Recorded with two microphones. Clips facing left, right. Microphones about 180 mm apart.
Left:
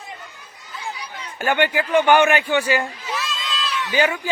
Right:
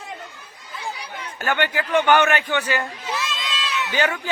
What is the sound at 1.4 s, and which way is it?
Speech, 15° left (ahead or behind).